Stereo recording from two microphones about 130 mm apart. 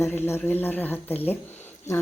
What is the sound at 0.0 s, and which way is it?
Speech, 15° left (ahead or behind).